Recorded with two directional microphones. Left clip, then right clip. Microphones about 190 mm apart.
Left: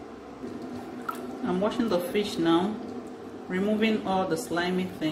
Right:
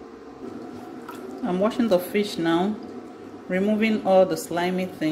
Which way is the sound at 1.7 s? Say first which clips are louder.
Right 6 dB; 45° right (ahead or behind).